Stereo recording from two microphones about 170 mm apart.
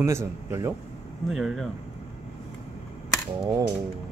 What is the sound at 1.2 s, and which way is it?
Speech, centre (ahead or behind).